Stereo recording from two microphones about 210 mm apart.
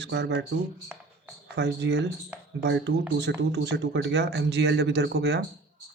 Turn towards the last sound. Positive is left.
turn(degrees=-50)  # may be behind; listen again after turning